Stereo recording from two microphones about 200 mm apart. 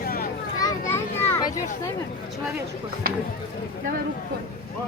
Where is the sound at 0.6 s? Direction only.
15° left (ahead or behind).